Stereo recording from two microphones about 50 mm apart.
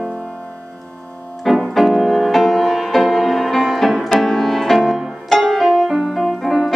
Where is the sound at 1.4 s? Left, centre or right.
Centre.